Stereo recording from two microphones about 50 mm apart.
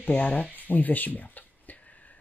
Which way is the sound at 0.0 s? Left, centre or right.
Left.